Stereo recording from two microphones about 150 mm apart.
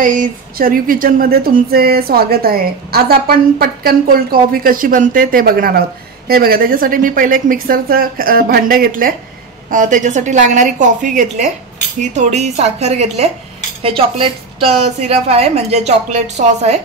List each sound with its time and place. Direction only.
0.0 s speech: 60° right (ahead or behind)
9.7 s a woman's voice: 60° right (ahead or behind)